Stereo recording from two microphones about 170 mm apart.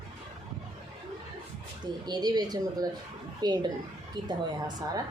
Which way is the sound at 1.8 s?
25° right (ahead or behind).